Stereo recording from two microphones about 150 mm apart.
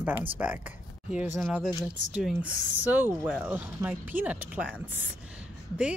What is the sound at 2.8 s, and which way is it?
Speech, 15° right (ahead or behind).